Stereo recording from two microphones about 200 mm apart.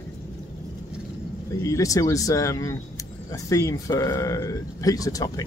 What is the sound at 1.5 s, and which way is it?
Speech, 15° left (ahead or behind).